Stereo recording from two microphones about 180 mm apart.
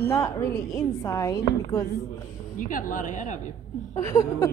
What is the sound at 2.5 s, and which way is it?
Speech, 50° left (ahead or behind).